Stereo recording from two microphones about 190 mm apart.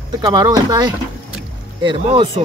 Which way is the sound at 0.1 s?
20° right (ahead or behind).